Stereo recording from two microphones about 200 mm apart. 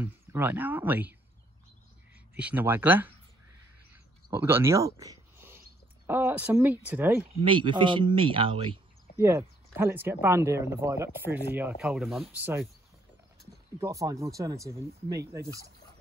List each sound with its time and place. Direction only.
0.0 s speech: 10° right (ahead or behind)
2.3 s speech: 5° right (ahead or behind)
3.9 s a sound: 10° right (ahead or behind)
6.0 s speech: 10° right (ahead or behind)
7.4 s speech: 25° right (ahead or behind)
9.2 s speech: 10° right (ahead or behind)
13.7 s speech: 15° right (ahead or behind)